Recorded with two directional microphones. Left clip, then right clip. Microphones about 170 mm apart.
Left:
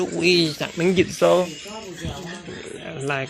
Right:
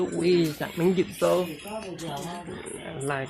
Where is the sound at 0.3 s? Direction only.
15° left (ahead or behind).